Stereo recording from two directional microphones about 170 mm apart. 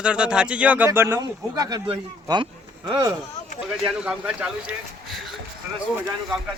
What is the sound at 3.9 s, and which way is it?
Speech, 5° right (ahead or behind).